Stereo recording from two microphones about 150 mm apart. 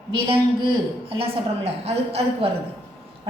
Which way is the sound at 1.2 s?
45° right (ahead or behind).